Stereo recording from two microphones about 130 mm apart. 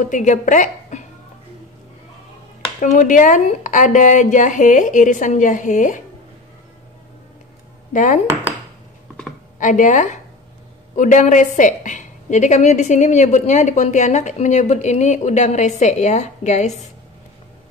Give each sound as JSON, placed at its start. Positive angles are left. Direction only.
{"t": 0.0, "sound": "a woman's voice", "side_deg": 75}
{"t": 2.8, "sound": "a woman's voice", "side_deg": 80}
{"t": 7.9, "sound": "speech", "side_deg": 75}
{"t": 9.6, "sound": "a woman's voice", "side_deg": 80}